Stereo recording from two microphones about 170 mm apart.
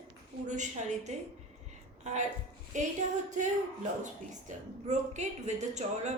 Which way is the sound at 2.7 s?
45° right (ahead or behind).